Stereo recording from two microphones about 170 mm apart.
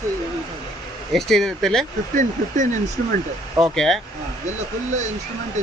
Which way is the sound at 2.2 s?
45° right (ahead or behind).